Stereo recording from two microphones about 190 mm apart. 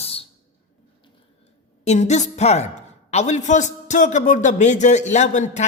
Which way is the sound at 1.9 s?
40° left (ahead or behind).